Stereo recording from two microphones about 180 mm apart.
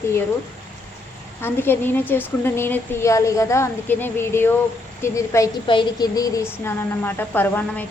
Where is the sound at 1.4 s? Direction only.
10° left (ahead or behind).